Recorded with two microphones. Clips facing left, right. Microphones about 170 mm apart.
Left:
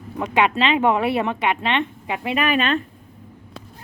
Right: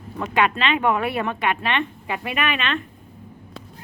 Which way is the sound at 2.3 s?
35° left (ahead or behind).